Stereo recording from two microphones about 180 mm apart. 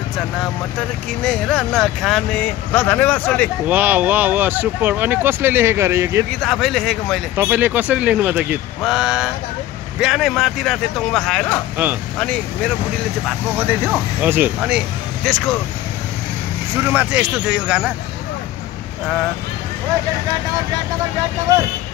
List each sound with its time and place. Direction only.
1.2 s speech: 5° left (ahead or behind)
3.6 s speech: 10° right (ahead or behind)
6.4 s speech: centre (ahead or behind)
7.3 s speech: 10° right (ahead or behind); by 12.7 s 5° left (ahead or behind)
14.2 s speech: 10° right (ahead or behind)
15.2 s speech: 5° left (ahead or behind)
16.8 s speech: 10° right (ahead or behind)